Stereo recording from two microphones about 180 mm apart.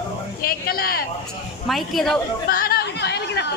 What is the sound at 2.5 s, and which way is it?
Chatter, 55° left (ahead or behind).